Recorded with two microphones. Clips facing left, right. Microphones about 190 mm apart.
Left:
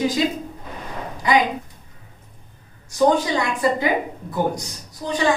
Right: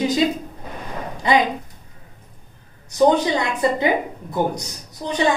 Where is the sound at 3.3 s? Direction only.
25° right (ahead or behind).